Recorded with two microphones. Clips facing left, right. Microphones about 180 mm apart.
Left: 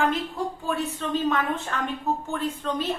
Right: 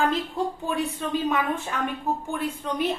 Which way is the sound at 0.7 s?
15° right (ahead or behind).